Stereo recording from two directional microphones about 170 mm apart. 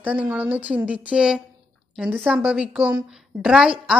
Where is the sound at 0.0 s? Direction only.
10° right (ahead or behind).